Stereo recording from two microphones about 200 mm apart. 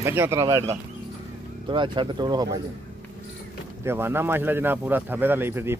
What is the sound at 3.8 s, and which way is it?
Speech, 10° right (ahead or behind).